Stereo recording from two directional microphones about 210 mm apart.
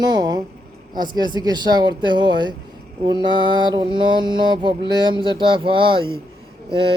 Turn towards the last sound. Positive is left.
turn(degrees=-25)  # may be behind; listen again after turning